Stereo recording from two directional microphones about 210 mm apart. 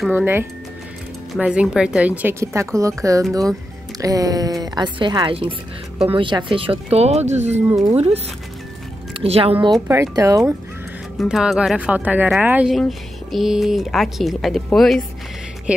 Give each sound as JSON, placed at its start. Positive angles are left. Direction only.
{"t": 0.1, "sound": "a woman's voice", "side_deg": -10}
{"t": 9.2, "sound": "speech", "side_deg": -30}
{"t": 9.8, "sound": "a woman's voice", "side_deg": -15}
{"t": 11.1, "sound": "speech", "side_deg": -5}